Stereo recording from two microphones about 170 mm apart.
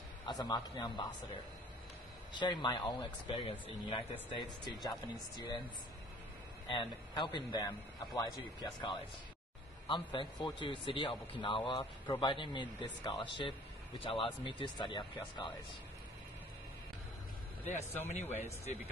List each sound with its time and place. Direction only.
0.2 s a man's voice: 25° left (ahead or behind)
2.3 s a man's voice: 25° left (ahead or behind)
6.7 s a man's voice: 30° left (ahead or behind)
17.6 s speech: 45° left (ahead or behind)